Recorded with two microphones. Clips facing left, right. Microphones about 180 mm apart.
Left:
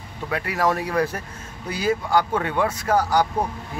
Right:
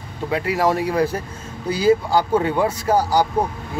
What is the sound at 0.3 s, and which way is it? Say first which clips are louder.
Speech: right 3 dB; 25° right (ahead or behind).